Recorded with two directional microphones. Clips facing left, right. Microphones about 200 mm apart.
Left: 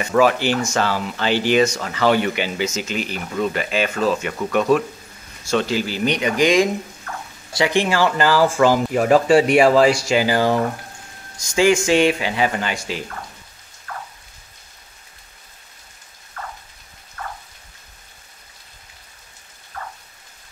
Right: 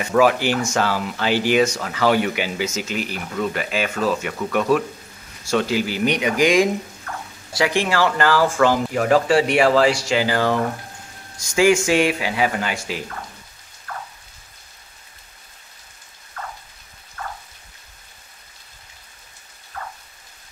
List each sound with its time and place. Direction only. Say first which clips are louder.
0.0 s speech: even; 5° right (ahead or behind)
8.5 s speech: left 2 dB; 15° left (ahead or behind)
11.5 s speech: even; 5° right (ahead or behind)
13.9 s rain: even; centre (ahead or behind)
16.4 s rain: even; centre (ahead or behind)
19.7 s rain: even; centre (ahead or behind)